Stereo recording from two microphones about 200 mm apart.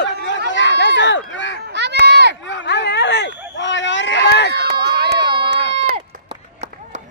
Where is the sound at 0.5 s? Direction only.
65° left (ahead or behind).